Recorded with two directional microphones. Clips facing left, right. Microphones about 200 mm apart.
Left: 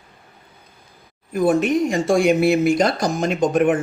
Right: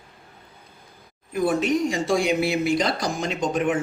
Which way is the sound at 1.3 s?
45° left (ahead or behind).